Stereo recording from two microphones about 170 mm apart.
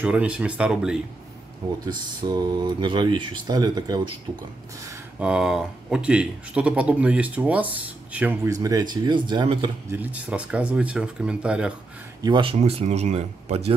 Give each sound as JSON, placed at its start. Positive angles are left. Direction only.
{"t": 0.0, "sound": "speech", "side_deg": -10}
{"t": 1.9, "sound": "speech", "side_deg": -25}
{"t": 5.2, "sound": "speech", "side_deg": -5}
{"t": 9.0, "sound": "speech", "side_deg": -25}
{"t": 9.8, "sound": "speech", "side_deg": -10}
{"t": 12.2, "sound": "speech", "side_deg": -25}
{"t": 12.5, "sound": "speech", "side_deg": -40}